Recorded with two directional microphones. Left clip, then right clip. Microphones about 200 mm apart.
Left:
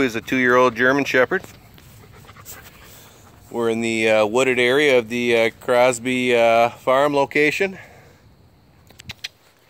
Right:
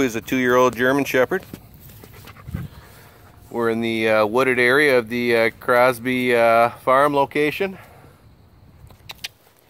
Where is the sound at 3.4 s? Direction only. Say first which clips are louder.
Even; centre (ahead or behind).